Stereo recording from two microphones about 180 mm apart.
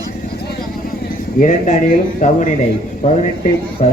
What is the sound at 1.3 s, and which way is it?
Speech, 45° left (ahead or behind).